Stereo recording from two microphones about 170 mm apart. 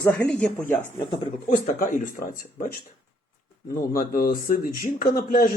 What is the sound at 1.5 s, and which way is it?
Speech, 50° left (ahead or behind).